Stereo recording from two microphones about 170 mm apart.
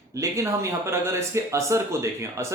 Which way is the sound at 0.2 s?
15° right (ahead or behind).